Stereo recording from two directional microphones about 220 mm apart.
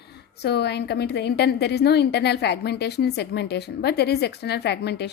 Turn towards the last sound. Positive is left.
turn(degrees=50)  # may be behind; listen again after turning